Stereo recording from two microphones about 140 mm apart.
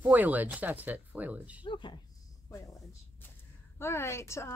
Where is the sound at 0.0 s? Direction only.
10° right (ahead or behind).